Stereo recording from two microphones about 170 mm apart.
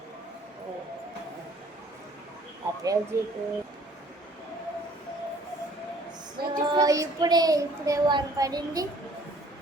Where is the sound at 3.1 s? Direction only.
15° right (ahead or behind).